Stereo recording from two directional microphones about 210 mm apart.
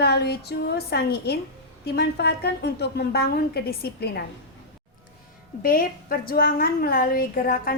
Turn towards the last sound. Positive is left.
turn(degrees=45)  # may be behind; listen again after turning